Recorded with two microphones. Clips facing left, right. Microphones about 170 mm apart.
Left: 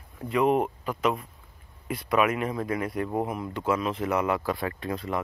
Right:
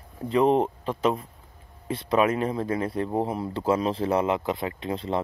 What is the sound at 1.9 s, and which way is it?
Speech, 30° right (ahead or behind).